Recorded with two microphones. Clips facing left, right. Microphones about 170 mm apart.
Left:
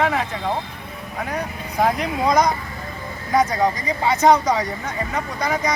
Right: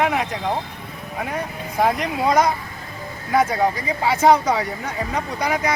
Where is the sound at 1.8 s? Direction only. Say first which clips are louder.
Even; 5° right (ahead or behind).